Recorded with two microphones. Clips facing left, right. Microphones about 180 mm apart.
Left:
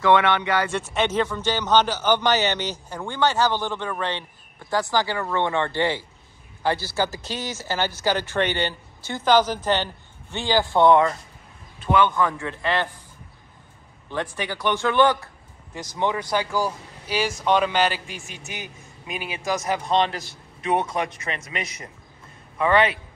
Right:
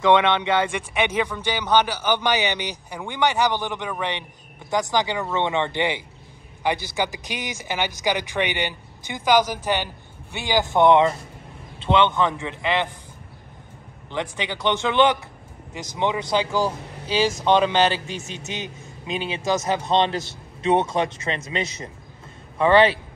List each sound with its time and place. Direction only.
0.0 s a man's voice: 20° right (ahead or behind)
14.0 s a man's voice: 20° right (ahead or behind)